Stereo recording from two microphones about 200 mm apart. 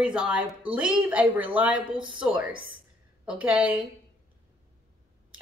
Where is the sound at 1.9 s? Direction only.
25° right (ahead or behind).